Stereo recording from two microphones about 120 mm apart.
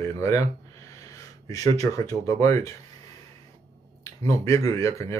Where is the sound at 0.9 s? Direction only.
30° left (ahead or behind).